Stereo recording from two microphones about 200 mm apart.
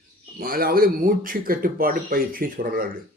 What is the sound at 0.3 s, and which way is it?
Speech, 50° right (ahead or behind).